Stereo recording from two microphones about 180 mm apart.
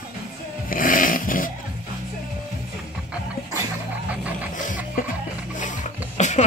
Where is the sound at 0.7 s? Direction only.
50° left (ahead or behind).